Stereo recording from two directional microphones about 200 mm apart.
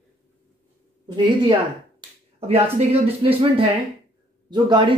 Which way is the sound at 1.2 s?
25° right (ahead or behind).